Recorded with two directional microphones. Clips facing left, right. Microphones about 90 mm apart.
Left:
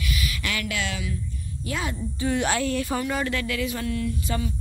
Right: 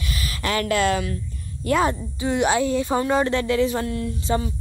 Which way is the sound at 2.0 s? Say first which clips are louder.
Right 3 dB; 20° right (ahead or behind).